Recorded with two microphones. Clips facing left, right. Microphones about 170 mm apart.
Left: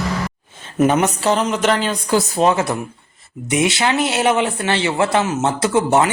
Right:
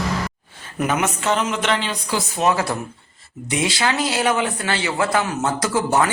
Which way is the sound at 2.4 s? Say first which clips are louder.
Left 3 dB; 25° left (ahead or behind).